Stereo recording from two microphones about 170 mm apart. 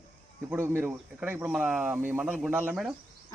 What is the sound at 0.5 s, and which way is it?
Speech, 15° right (ahead or behind).